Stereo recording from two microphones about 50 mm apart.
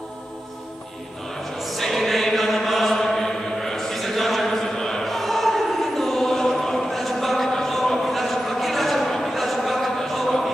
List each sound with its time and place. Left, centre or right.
1.6 s chant: centre